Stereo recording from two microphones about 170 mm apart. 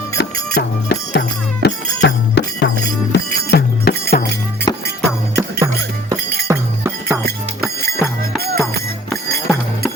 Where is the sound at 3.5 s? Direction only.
70° left (ahead or behind).